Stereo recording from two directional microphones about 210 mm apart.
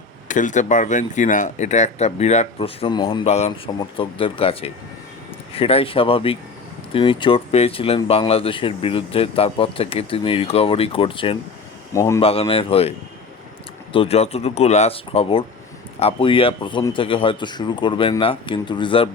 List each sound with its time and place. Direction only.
0.3 s speech: 35° left (ahead or behind)
11.9 s speech: 15° left (ahead or behind)
12.2 s speech: 25° left (ahead or behind)
13.9 s speech: 30° left (ahead or behind)